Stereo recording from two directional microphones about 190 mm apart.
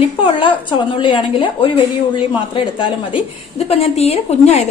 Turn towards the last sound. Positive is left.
turn(degrees=35)  # may be behind; listen again after turning